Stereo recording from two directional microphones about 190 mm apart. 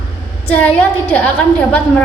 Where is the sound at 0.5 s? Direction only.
5° left (ahead or behind).